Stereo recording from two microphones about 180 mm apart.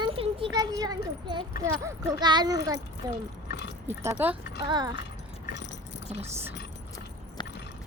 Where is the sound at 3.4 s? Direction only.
70° left (ahead or behind).